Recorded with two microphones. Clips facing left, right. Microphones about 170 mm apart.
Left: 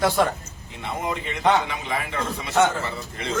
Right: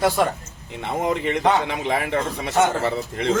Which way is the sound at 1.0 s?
65° right (ahead or behind).